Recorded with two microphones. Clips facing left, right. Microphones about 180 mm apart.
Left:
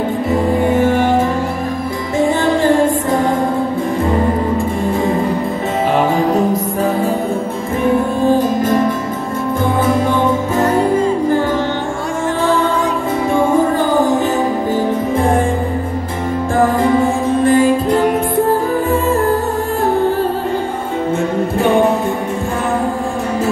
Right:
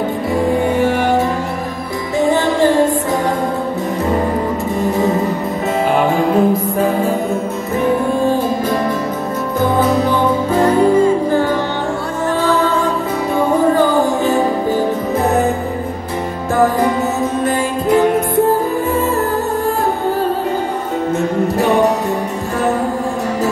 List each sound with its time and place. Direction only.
2.1 s music: 20° right (ahead or behind)
6.1 s music: 40° left (ahead or behind)
21.5 s music: 40° right (ahead or behind)